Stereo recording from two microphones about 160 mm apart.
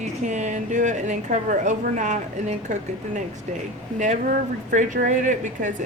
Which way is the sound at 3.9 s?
50° right (ahead or behind).